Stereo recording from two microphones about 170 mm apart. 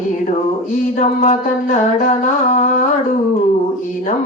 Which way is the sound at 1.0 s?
45° left (ahead or behind).